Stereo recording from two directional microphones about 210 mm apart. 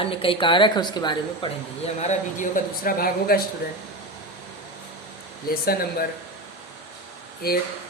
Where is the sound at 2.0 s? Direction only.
35° left (ahead or behind).